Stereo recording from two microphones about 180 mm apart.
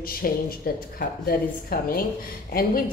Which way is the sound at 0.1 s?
55° left (ahead or behind).